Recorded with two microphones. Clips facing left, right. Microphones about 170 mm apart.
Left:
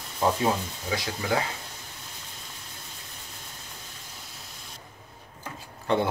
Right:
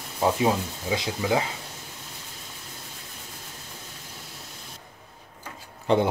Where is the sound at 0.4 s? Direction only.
20° right (ahead or behind).